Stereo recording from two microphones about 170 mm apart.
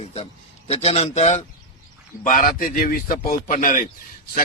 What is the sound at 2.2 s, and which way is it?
A man's voice, 50° left (ahead or behind).